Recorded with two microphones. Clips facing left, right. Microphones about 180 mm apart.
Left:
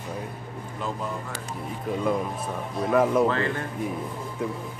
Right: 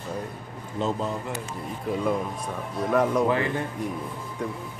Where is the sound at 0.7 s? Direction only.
25° right (ahead or behind).